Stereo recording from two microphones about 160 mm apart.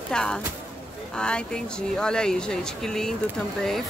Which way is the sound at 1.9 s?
5° left (ahead or behind).